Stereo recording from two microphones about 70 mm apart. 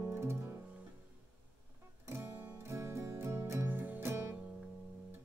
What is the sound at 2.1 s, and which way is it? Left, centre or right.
Music, right.